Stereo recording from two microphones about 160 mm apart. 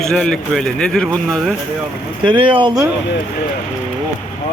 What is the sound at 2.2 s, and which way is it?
Speech, 30° right (ahead or behind).